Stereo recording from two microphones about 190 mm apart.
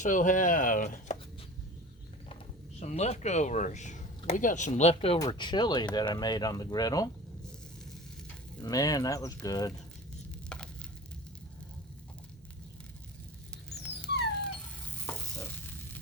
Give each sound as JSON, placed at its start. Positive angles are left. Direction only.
{"t": 0.0, "sound": "speech", "side_deg": 45}
{"t": 2.8, "sound": "speech", "side_deg": 35}
{"t": 8.5, "sound": "speech", "side_deg": 20}
{"t": 10.5, "sound": "frying", "side_deg": 5}
{"t": 15.0, "sound": "stir", "side_deg": 10}